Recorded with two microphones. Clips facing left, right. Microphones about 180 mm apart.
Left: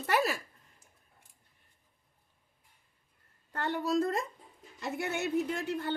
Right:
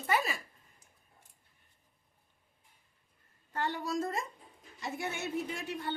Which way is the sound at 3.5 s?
60° left (ahead or behind).